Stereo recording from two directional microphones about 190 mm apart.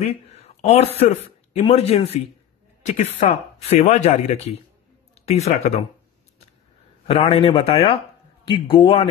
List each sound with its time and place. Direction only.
0.0 s speech: 35° left (ahead or behind)
7.1 s speech: 30° left (ahead or behind)